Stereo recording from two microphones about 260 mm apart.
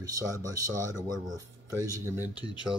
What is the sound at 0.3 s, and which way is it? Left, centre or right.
Speech, centre.